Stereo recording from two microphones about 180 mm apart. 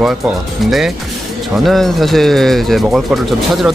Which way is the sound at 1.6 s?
Centre (ahead or behind).